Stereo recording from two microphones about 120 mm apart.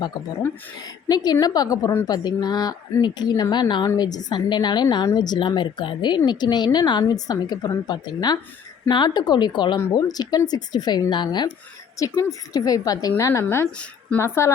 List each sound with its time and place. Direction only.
1.0 s speech: 35° left (ahead or behind)
9.7 s speech: 25° left (ahead or behind)
11.9 s a woman's voice: 25° left (ahead or behind)